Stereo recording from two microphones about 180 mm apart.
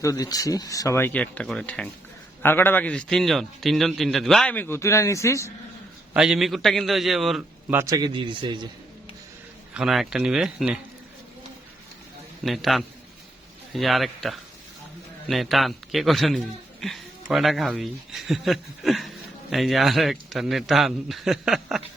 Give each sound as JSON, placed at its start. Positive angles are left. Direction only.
{"t": 0.0, "sound": "a man's voice", "side_deg": 20}
{"t": 6.1, "sound": "speech", "side_deg": -5}
{"t": 7.8, "sound": "speech", "side_deg": -20}
{"t": 9.7, "sound": "speech", "side_deg": 0}
{"t": 12.4, "sound": "speech", "side_deg": 0}